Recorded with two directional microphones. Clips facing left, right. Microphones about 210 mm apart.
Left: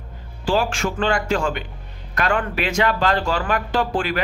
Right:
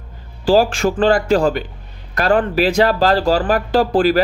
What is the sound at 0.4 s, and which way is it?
A man's voice, 35° right (ahead or behind).